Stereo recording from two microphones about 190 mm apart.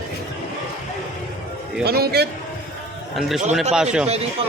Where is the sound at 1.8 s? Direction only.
55° right (ahead or behind).